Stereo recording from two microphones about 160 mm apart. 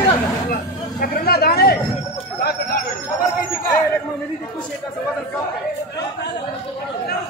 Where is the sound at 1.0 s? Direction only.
70° left (ahead or behind).